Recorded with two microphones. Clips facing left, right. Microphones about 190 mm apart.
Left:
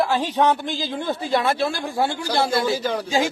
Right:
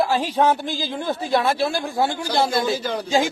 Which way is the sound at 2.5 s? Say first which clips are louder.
Left 1 dB; 10° left (ahead or behind).